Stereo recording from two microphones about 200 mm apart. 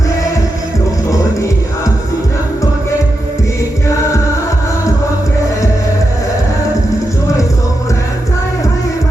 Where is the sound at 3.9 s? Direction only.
15° left (ahead or behind).